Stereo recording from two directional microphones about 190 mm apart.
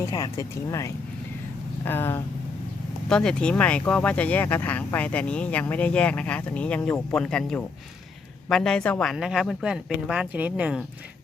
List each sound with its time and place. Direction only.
0.0 s speech: 15° left (ahead or behind); by 10.8 s 5° right (ahead or behind)